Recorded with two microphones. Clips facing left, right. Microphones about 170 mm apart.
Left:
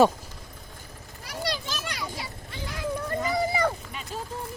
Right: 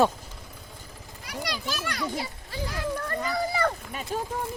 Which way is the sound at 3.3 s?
20° left (ahead or behind).